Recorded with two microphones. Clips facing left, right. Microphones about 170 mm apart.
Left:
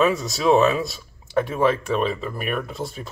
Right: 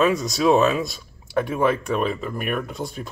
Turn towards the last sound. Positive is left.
turn(degrees=0)  # may be behind; listen again after turning